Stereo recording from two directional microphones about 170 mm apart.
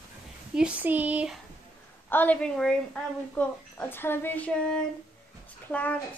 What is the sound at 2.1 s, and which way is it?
A woman's voice, 10° left (ahead or behind).